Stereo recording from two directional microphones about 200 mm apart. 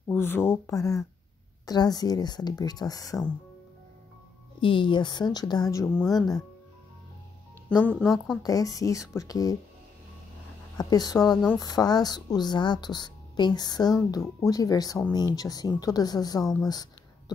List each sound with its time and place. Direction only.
0.0 s speech: 10° left (ahead or behind)
4.6 s speech: 25° left (ahead or behind); by 6.1 s 5° left (ahead or behind)
6.1 s speech: 20° left (ahead or behind)
7.7 s speech: 5° left (ahead or behind)
8.4 s speech: 15° left (ahead or behind)
10.8 s speech: 20° left (ahead or behind)